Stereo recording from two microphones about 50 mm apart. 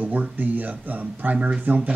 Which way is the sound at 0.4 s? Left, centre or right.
Right.